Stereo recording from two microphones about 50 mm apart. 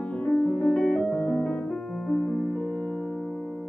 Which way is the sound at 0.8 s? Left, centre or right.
Centre.